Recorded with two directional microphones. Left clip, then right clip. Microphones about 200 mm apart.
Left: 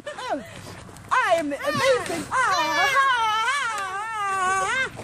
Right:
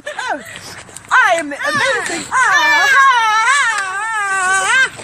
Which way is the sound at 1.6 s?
40° left (ahead or behind).